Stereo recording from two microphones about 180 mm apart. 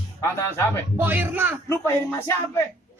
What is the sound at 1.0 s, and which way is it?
Speech, 10° right (ahead or behind).